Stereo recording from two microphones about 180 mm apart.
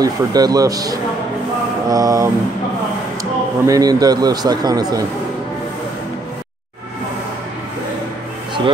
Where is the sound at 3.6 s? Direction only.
20° right (ahead or behind).